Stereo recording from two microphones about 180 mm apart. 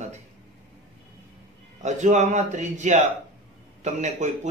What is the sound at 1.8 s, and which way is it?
A man's voice, 40° right (ahead or behind).